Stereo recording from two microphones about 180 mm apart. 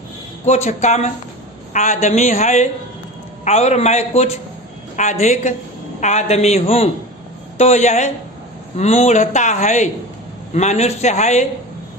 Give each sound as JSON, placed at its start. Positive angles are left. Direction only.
{"t": 0.4, "sound": "a man's voice", "side_deg": 40}